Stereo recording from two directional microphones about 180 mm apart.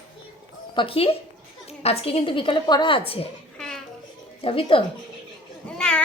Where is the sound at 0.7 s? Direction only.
30° left (ahead or behind).